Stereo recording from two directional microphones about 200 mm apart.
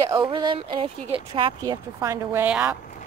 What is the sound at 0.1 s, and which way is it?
Speech, 20° right (ahead or behind).